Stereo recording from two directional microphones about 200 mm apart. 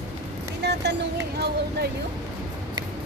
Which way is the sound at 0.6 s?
60° right (ahead or behind).